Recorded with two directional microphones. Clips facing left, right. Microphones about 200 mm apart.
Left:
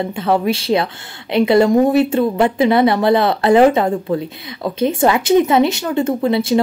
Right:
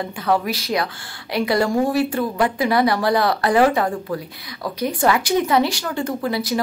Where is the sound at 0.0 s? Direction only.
25° left (ahead or behind).